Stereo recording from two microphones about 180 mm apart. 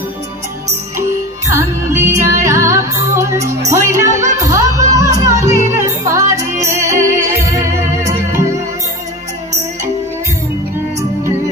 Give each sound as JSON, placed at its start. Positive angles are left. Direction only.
{"t": 1.5, "sound": "music", "side_deg": -15}